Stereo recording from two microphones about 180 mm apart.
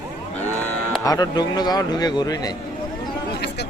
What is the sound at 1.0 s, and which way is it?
A man's voice, 20° left (ahead or behind).